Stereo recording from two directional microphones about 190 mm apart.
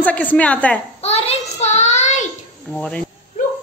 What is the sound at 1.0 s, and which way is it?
Child singing, 35° left (ahead or behind).